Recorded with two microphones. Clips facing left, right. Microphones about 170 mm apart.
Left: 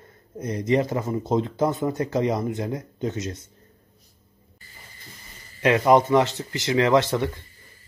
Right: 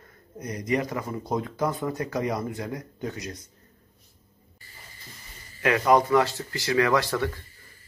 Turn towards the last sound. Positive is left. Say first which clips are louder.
# left 4 dB
turn(degrees=20)  # may be behind; listen again after turning